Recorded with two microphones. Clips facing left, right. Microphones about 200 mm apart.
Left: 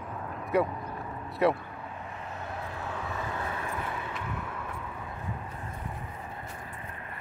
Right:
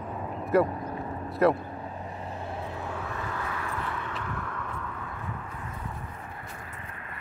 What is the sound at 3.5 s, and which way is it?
Vehicle, 25° left (ahead or behind).